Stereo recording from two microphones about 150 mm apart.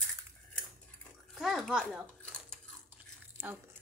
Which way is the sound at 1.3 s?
Centre (ahead or behind).